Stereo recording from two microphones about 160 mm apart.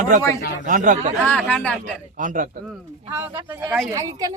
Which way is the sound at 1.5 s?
10° left (ahead or behind).